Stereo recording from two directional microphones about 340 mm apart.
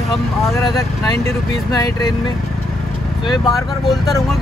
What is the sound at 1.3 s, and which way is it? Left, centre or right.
Speech, centre.